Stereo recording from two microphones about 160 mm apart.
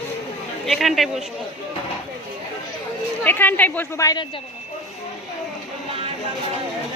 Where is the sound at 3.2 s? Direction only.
10° left (ahead or behind).